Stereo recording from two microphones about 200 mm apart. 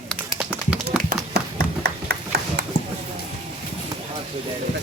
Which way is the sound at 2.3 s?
55° right (ahead or behind).